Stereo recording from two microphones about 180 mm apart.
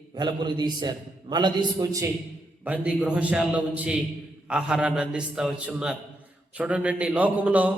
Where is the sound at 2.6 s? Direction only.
10° right (ahead or behind).